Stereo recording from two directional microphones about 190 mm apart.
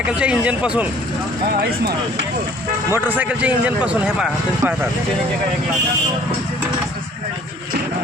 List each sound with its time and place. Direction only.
0.0 s speech: 5° right (ahead or behind)
2.9 s a man's voice: 10° right (ahead or behind)